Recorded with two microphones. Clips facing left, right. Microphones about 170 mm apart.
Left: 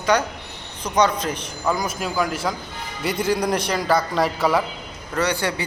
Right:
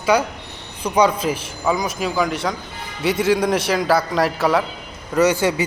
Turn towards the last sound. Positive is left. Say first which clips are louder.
# right 6 dB
turn(degrees=-20)  # may be behind; listen again after turning